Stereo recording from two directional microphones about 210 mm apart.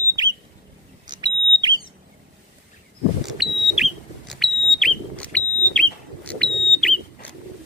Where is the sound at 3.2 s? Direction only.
Centre (ahead or behind).